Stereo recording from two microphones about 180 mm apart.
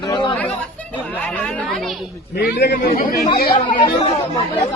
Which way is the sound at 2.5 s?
65° left (ahead or behind).